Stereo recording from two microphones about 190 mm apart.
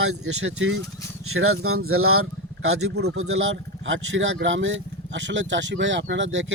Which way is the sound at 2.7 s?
75° right (ahead or behind).